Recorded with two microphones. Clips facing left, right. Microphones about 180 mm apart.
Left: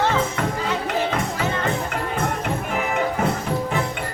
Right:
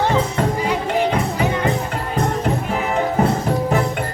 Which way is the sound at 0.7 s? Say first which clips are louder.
Right 4 dB; 15° right (ahead or behind).